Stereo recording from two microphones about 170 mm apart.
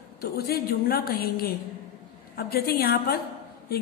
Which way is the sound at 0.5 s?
65° left (ahead or behind).